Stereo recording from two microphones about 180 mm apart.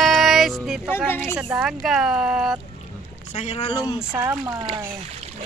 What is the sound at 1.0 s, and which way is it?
Speech, 10° left (ahead or behind).